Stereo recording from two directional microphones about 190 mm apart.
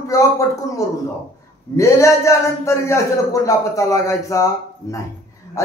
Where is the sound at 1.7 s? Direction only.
15° left (ahead or behind).